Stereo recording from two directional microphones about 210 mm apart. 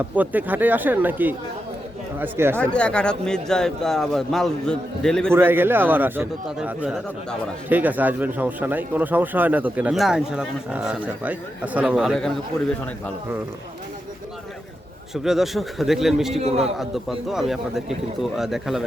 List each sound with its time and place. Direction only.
0.2 s a man's voice: 10° right (ahead or behind)
2.7 s speech: 5° left (ahead or behind)
5.3 s a man's voice: 10° right (ahead or behind)
15.1 s speech: centre (ahead or behind)
16.4 s a man's voice: 30° right (ahead or behind)
16.7 s speech: centre (ahead or behind)